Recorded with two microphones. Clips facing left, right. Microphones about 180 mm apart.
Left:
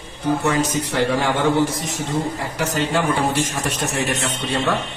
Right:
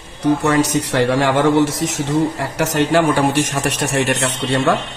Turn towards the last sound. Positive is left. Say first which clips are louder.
# right 5 dB
turn(degrees=-75)  # may be behind; listen again after turning